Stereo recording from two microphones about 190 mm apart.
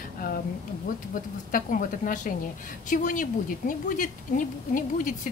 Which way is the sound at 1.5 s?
45° left (ahead or behind).